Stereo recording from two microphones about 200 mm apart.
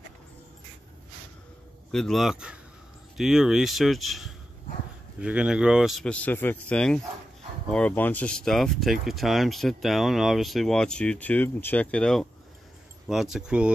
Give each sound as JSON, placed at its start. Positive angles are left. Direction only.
{"t": 1.9, "sound": "speech", "side_deg": 0}